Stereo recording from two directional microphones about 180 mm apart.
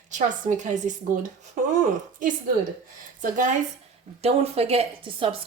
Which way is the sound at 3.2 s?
45° right (ahead or behind).